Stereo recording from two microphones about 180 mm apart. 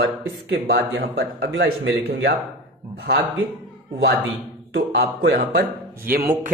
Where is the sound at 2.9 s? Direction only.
65° right (ahead or behind).